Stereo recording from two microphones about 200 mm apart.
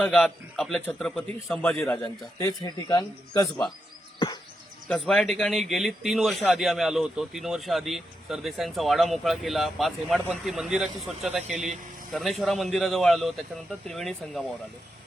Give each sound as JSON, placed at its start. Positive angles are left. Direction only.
{"t": 0.0, "sound": "speech", "side_deg": 5}
{"t": 2.0, "sound": "a man's voice", "side_deg": 20}
{"t": 4.9, "sound": "speech", "side_deg": 0}